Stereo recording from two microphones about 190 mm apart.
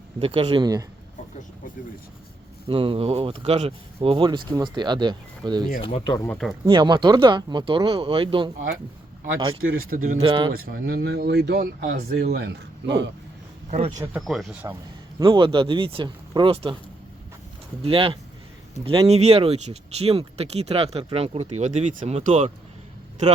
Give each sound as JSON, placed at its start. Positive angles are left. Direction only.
{"t": 0.2, "sound": "speech", "side_deg": -30}
{"t": 2.6, "sound": "speech", "side_deg": -30}
{"t": 5.8, "sound": "speech", "side_deg": 25}
{"t": 6.2, "sound": "speech", "side_deg": 5}
{"t": 6.7, "sound": "speech", "side_deg": -25}
{"t": 9.6, "sound": "speech", "side_deg": -90}
{"t": 9.9, "sound": "speech", "side_deg": -50}
{"t": 10.2, "sound": "speech", "side_deg": -25}
{"t": 10.7, "sound": "speech", "side_deg": -55}
{"t": 13.7, "sound": "speech", "side_deg": -35}
{"t": 14.2, "sound": "speech", "side_deg": 0}
{"t": 15.2, "sound": "speech", "side_deg": -25}
{"t": 17.8, "sound": "speech", "side_deg": -30}